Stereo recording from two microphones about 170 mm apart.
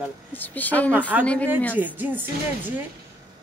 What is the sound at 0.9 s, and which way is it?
Speech, 10° right (ahead or behind).